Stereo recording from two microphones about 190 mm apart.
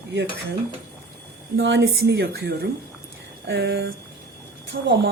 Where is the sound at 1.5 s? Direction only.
65° right (ahead or behind).